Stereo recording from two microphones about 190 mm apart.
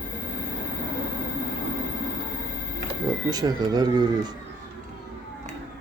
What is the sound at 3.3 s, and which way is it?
Speech, 20° right (ahead or behind).